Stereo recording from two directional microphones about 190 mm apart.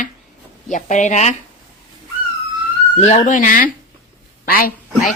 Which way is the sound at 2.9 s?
35° left (ahead or behind).